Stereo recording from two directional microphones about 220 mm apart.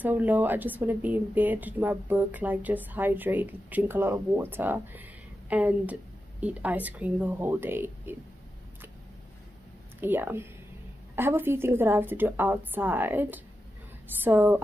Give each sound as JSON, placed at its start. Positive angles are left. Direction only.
{"t": 0.0, "sound": "speech", "side_deg": -10}
{"t": 9.9, "sound": "speech", "side_deg": -10}